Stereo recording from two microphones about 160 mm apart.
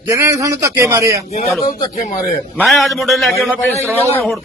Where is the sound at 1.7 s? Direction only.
55° left (ahead or behind).